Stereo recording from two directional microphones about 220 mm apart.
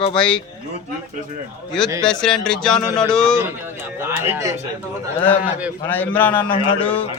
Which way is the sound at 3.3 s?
10° right (ahead or behind).